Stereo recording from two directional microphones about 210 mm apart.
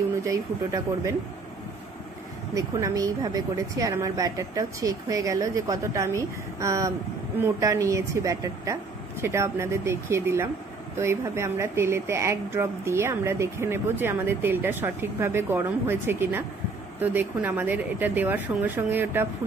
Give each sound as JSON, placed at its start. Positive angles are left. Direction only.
{"t": 2.5, "sound": "speech", "side_deg": -15}